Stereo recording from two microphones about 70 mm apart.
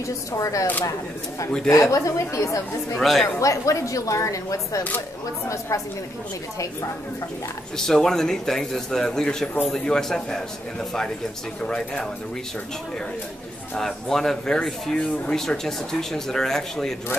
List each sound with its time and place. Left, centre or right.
0.3 s speech: left
1.7 s speech: left
3.0 s speech: centre
3.3 s speech: left
7.7 s a man's voice: centre
11.6 s a man's voice: centre
13.7 s speech: centre